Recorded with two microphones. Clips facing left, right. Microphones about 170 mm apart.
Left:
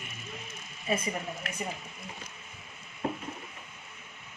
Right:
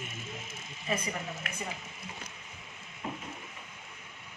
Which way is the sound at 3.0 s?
45° left (ahead or behind).